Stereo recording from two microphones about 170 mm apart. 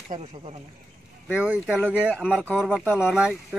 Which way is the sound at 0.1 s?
25° right (ahead or behind).